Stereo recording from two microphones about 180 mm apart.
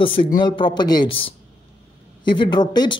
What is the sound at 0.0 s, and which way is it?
Speech, 30° left (ahead or behind).